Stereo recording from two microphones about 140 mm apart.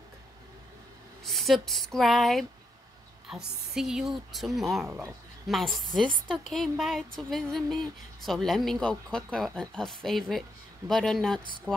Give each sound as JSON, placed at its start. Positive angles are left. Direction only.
{"t": 1.2, "sound": "speech", "side_deg": 0}
{"t": 4.8, "sound": "speech", "side_deg": -15}
{"t": 5.5, "sound": "speech", "side_deg": 0}